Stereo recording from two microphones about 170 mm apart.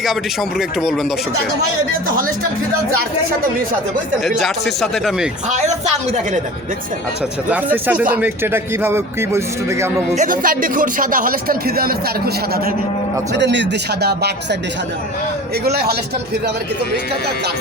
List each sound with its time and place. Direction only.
4.2 s speech: centre (ahead or behind)
5.5 s speech: 40° right (ahead or behind)
7.5 s speech: 10° right (ahead or behind)
10.2 s a man's voice: 55° right (ahead or behind)
13.3 s speech: 90° right; by 14.3 s 70° right (ahead or behind)
15.6 s a man's voice: 70° right (ahead or behind)